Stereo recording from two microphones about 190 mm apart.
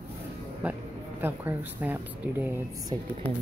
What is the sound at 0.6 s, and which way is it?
Speech, 10° right (ahead or behind).